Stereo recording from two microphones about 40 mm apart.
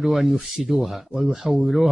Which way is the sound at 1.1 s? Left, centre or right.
Centre.